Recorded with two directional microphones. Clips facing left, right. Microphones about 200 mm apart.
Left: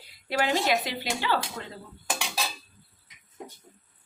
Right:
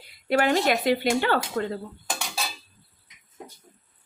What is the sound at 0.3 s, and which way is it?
Speech, 55° right (ahead or behind).